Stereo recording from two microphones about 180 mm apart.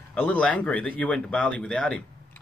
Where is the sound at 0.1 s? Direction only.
5° left (ahead or behind).